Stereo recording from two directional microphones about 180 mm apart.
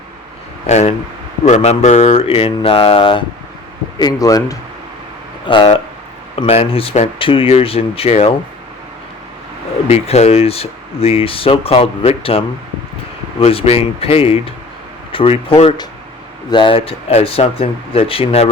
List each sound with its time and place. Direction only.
0.7 s speech: 35° left (ahead or behind); by 4.5 s 20° left (ahead or behind)
5.5 s speech: 30° left (ahead or behind)
9.9 s speech: 35° left (ahead or behind)
13.4 s speech: 35° left (ahead or behind)